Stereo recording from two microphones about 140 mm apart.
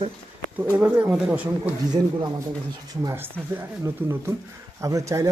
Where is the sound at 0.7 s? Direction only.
10° right (ahead or behind).